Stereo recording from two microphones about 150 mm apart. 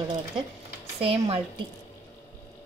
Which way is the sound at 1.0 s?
40° right (ahead or behind).